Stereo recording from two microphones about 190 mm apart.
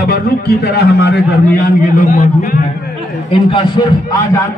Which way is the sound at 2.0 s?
40° left (ahead or behind).